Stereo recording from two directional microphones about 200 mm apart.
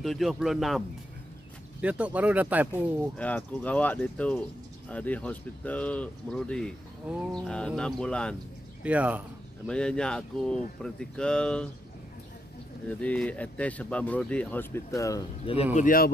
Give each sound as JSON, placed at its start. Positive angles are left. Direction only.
{"t": 0.0, "sound": "speech", "side_deg": 0}
{"t": 3.2, "sound": "speech", "side_deg": 5}
{"t": 8.8, "sound": "speech", "side_deg": -5}
{"t": 9.7, "sound": "speech", "side_deg": 5}
{"t": 12.8, "sound": "speech", "side_deg": 5}
{"t": 15.7, "sound": "speech", "side_deg": 45}